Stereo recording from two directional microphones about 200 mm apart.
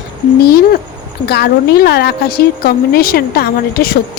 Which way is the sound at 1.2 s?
55° left (ahead or behind).